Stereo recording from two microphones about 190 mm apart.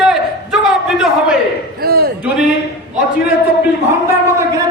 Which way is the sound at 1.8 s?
55° right (ahead or behind).